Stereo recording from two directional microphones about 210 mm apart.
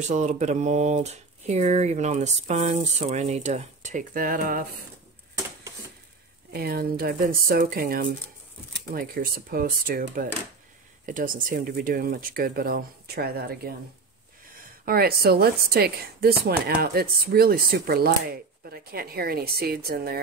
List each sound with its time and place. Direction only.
0.0 s speech: 35° right (ahead or behind)
6.5 s a woman's voice: 45° right (ahead or behind)